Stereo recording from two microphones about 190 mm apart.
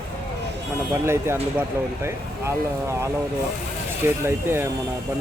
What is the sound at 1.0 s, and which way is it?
Speech, 15° right (ahead or behind).